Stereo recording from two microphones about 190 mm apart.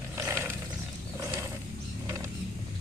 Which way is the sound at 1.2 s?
15° right (ahead or behind).